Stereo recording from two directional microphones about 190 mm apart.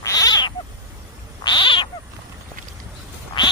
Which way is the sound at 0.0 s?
20° left (ahead or behind).